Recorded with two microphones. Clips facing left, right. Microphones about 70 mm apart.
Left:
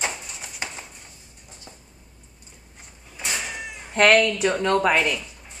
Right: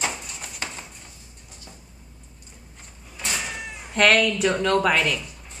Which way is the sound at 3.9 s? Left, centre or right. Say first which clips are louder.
Left 2 dB; left.